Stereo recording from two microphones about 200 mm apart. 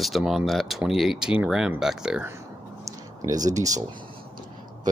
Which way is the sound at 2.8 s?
20° right (ahead or behind).